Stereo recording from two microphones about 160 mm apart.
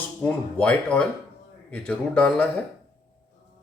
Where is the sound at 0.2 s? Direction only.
10° left (ahead or behind).